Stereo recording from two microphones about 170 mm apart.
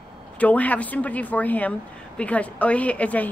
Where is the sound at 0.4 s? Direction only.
10° left (ahead or behind).